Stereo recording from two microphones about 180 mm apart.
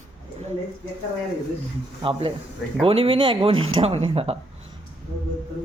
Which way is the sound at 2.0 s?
30° right (ahead or behind).